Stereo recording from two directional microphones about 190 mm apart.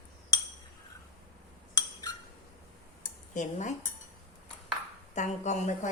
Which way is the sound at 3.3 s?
40° left (ahead or behind).